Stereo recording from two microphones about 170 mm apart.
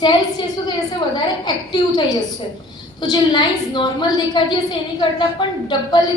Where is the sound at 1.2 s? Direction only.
25° left (ahead or behind).